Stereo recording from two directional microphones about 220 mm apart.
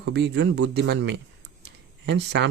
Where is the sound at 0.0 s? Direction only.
50° right (ahead or behind).